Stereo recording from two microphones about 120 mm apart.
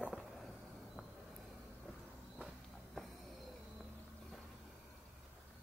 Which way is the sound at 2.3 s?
Centre (ahead or behind).